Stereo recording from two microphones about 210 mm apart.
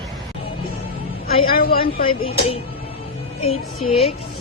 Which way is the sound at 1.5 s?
45° left (ahead or behind).